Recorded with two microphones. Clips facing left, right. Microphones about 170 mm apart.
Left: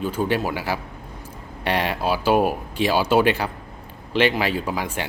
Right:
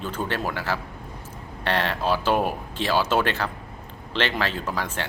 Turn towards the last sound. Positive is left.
turn(degrees=15)  # may be behind; listen again after turning